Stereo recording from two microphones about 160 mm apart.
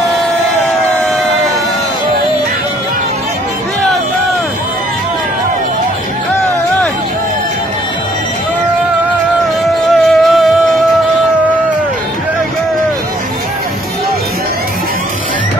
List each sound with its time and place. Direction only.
6.3 s music: 15° left (ahead or behind)
10.0 s music: centre (ahead or behind)